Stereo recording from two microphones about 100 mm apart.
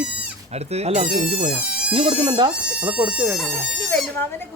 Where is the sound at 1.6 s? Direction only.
10° right (ahead or behind).